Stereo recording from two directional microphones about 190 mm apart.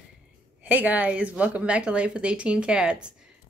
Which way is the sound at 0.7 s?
10° right (ahead or behind).